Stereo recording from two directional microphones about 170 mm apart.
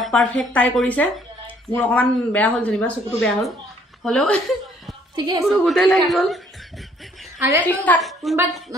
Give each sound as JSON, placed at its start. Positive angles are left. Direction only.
{"t": 0.0, "sound": "speech", "side_deg": 5}
{"t": 5.1, "sound": "a woman's voice", "side_deg": -25}
{"t": 5.4, "sound": "speech", "side_deg": 0}
{"t": 7.3, "sound": "a woman's voice", "side_deg": -15}
{"t": 7.6, "sound": "speech", "side_deg": 10}